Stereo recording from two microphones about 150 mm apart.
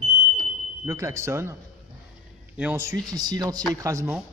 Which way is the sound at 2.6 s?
15° right (ahead or behind).